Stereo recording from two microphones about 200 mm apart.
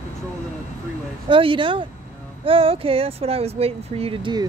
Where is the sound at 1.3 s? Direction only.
25° right (ahead or behind).